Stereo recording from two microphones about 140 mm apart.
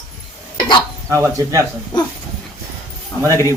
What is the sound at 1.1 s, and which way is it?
Speech, 20° right (ahead or behind).